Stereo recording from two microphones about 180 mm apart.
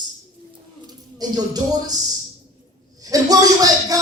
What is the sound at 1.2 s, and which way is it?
Speech, 20° right (ahead or behind).